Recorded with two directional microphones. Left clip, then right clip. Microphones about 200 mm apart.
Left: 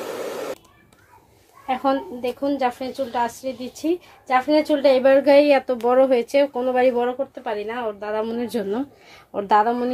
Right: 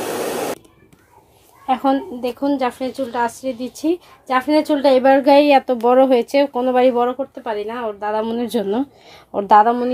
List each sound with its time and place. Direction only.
0.0 s spray: 45° right (ahead or behind)
1.7 s a woman's voice: 35° right (ahead or behind)